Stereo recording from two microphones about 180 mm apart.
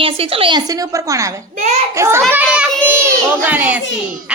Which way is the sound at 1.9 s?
15° right (ahead or behind).